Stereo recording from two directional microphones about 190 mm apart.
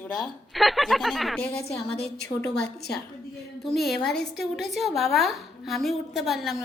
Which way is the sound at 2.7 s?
60° left (ahead or behind).